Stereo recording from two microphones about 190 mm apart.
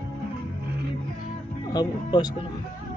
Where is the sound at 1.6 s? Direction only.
20° left (ahead or behind).